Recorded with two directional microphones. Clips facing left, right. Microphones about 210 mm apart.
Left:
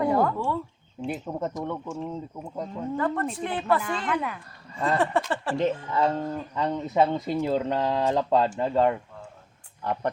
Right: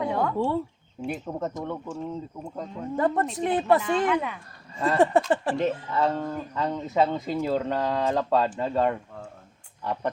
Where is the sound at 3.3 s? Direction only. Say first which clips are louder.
Right 4 dB; 40° right (ahead or behind).